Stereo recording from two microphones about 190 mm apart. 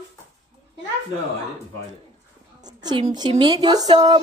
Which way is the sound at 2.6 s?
20° right (ahead or behind).